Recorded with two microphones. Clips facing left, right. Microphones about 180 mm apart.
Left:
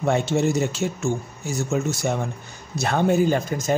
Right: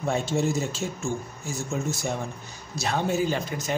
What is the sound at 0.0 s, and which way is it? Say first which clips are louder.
Speech: left 5 dB; 70° left (ahead or behind).